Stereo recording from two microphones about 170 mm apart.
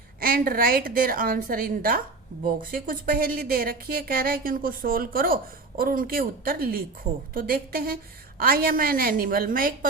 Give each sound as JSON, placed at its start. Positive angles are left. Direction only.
{"t": 0.2, "sound": "a woman's voice", "side_deg": -60}